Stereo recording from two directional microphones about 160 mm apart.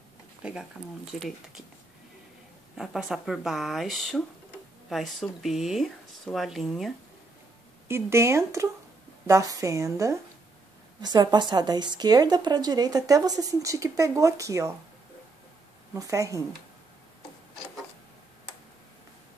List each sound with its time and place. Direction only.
0.4 s speech: 5° right (ahead or behind)
2.8 s speech: 5° right (ahead or behind)
7.9 s a woman's voice: 15° right (ahead or behind)
15.9 s a woman's voice: 20° right (ahead or behind)